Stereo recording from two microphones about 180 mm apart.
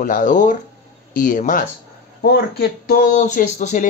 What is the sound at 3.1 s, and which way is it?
Speech, 45° left (ahead or behind).